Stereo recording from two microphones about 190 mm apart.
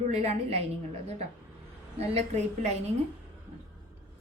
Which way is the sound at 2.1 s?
35° right (ahead or behind).